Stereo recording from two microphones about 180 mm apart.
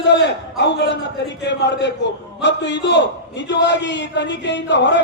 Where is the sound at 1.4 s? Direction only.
75° left (ahead or behind).